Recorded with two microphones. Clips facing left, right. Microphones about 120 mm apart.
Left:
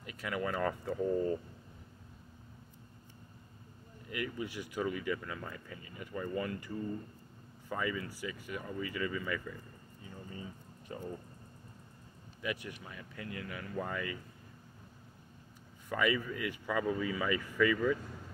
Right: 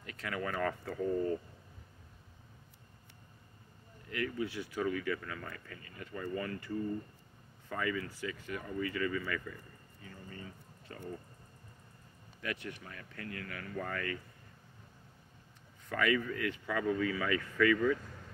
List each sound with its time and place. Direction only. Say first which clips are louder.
0.0 s speech: left 2 dB; 10° left (ahead or behind)
4.1 s speech: right 2 dB; 15° left (ahead or behind)
7.7 s speech: even; 15° left (ahead or behind)
10.0 s a sound: left 2 dB; 15° left (ahead or behind)
12.4 s speech: left 1 dB; 15° left (ahead or behind)
15.9 s speech: right 1 dB; 10° left (ahead or behind)